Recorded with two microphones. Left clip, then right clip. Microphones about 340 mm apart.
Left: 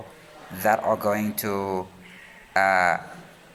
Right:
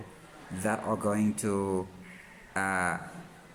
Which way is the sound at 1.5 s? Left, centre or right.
Left.